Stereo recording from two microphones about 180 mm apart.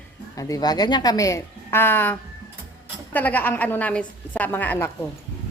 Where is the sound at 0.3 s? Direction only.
20° left (ahead or behind).